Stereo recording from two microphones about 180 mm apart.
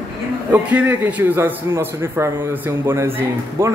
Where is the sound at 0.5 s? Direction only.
10° right (ahead or behind).